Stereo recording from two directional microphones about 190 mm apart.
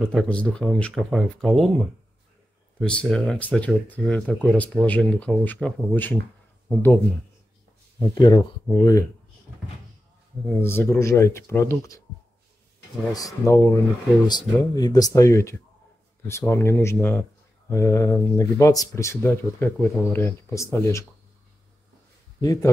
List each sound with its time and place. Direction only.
0.0 s speech: 5° left (ahead or behind)
2.8 s speech: 5° left (ahead or behind)
8.0 s speech: 25° left (ahead or behind)
10.4 s speech: 10° left (ahead or behind)
13.1 s speech: 15° left (ahead or behind)
22.4 s speech: 20° left (ahead or behind)